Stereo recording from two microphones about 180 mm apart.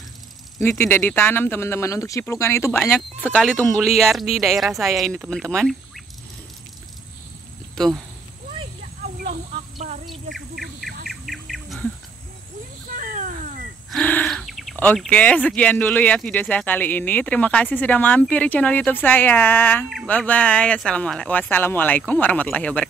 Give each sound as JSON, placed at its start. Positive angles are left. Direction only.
{"t": 0.6, "sound": "speech", "side_deg": 10}
{"t": 7.7, "sound": "speech", "side_deg": 0}
{"t": 11.1, "sound": "bird", "side_deg": 0}
{"t": 12.9, "sound": "a sound", "side_deg": -45}
{"t": 13.8, "sound": "bird", "side_deg": 5}
{"t": 15.0, "sound": "speech", "side_deg": 5}